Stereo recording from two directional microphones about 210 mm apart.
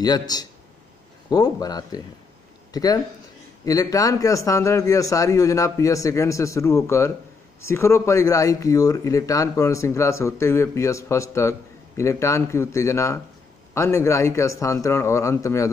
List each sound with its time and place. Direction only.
0.3 s speech: 20° left (ahead or behind)